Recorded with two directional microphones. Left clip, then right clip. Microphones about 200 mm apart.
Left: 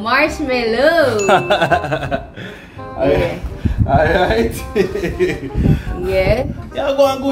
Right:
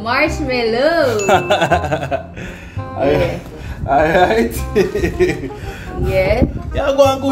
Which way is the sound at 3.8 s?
40° right (ahead or behind).